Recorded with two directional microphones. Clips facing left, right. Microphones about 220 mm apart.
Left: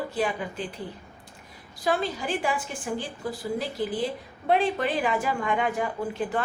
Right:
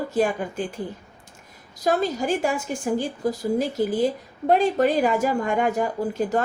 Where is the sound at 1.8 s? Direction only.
40° right (ahead or behind).